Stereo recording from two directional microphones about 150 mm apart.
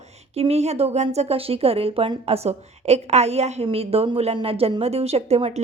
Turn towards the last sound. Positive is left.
turn(degrees=-45)  # may be behind; listen again after turning